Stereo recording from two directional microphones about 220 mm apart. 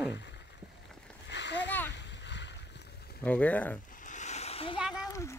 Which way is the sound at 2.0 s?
50° left (ahead or behind).